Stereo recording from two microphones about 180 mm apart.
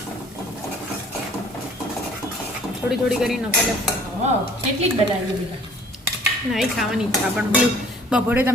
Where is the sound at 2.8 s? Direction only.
Centre (ahead or behind).